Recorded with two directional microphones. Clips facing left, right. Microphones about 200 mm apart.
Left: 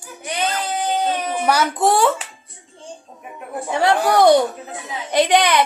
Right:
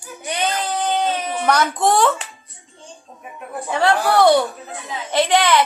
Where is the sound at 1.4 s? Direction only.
10° left (ahead or behind).